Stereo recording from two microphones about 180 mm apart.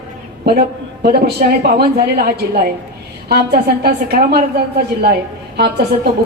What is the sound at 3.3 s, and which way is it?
Speech, 60° right (ahead or behind).